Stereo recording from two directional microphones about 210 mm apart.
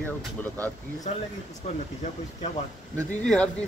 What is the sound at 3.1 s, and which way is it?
Speech, 5° left (ahead or behind).